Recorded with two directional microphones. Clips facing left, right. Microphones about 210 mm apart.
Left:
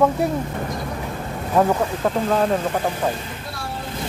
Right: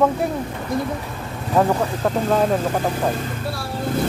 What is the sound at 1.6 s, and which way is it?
Speech, centre (ahead or behind).